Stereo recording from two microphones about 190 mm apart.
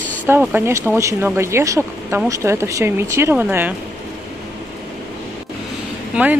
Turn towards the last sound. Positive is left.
turn(degrees=-5)  # may be behind; listen again after turning